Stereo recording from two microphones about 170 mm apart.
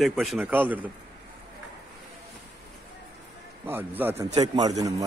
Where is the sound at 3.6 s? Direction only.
10° right (ahead or behind).